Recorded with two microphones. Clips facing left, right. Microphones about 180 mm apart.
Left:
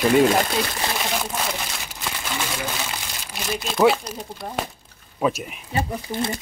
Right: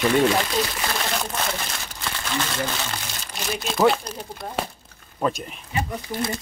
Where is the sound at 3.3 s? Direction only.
Centre (ahead or behind).